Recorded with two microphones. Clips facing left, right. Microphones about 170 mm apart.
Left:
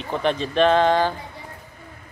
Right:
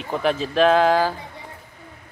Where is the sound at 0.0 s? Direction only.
5° right (ahead or behind).